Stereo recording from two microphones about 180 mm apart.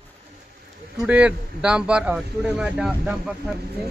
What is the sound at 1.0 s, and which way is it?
A man's voice, 5° right (ahead or behind).